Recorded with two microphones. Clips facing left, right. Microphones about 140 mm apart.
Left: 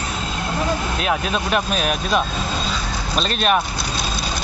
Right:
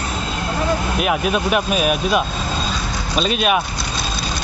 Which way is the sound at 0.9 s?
10° right (ahead or behind).